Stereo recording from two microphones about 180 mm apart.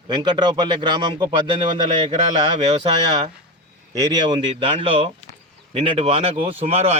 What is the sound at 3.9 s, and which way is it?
A man's voice, 25° right (ahead or behind).